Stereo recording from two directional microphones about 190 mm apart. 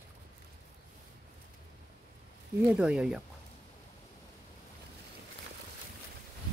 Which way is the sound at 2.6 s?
5° right (ahead or behind).